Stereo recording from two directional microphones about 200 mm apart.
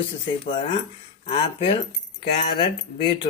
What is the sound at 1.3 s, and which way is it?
Speech, 30° left (ahead or behind).